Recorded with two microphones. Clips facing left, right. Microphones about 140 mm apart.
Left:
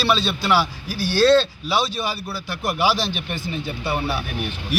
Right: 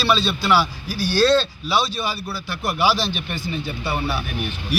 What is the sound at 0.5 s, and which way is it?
Speech, 55° left (ahead or behind).